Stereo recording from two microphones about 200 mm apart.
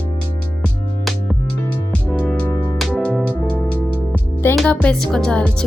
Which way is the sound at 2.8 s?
5° left (ahead or behind).